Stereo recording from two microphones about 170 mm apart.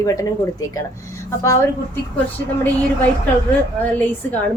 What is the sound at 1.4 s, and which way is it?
Speech, 15° left (ahead or behind).